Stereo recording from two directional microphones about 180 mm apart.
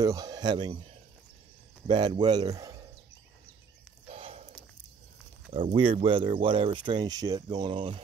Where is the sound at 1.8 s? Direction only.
25° right (ahead or behind).